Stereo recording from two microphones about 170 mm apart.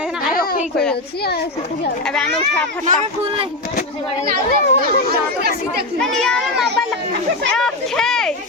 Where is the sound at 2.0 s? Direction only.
5° left (ahead or behind).